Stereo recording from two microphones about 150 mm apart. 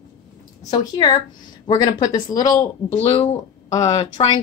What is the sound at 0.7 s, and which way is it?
A woman's voice, 30° left (ahead or behind).